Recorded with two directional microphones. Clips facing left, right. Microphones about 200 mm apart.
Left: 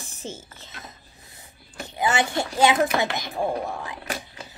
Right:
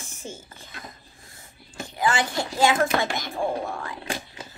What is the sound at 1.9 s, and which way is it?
A woman's voice, 25° left (ahead or behind).